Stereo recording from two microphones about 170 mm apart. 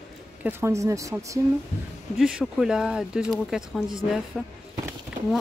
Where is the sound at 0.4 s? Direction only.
15° right (ahead or behind).